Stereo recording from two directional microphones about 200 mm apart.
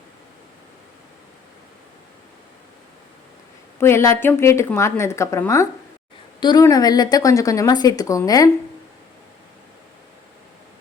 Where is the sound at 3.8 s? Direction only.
15° left (ahead or behind).